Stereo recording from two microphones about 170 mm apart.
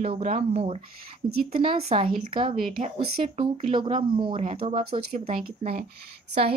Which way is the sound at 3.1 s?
35° right (ahead or behind).